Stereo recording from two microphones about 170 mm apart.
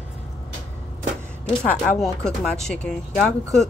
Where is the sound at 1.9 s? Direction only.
Centre (ahead or behind).